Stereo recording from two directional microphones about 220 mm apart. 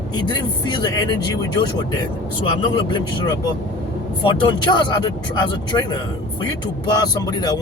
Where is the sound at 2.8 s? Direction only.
20° left (ahead or behind).